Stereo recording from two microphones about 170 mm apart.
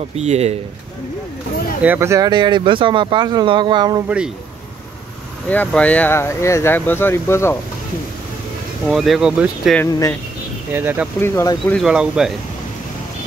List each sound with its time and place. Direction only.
0.1 s speech: 40° right (ahead or behind)
1.8 s speech: 15° right (ahead or behind)
5.5 s speech: 10° left (ahead or behind)
8.8 s speech: centre (ahead or behind)
9.8 s speech: 20° left (ahead or behind)
10.7 s speech: 10° right (ahead or behind)
11.1 s speech: 15° left (ahead or behind); by 12.4 s 5° right (ahead or behind)